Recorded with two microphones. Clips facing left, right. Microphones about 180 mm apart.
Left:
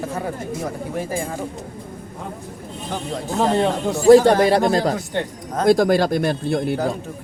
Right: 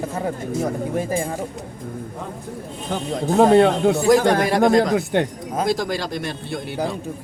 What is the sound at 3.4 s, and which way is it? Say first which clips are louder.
Speech: right 6 dB; 60° right (ahead or behind).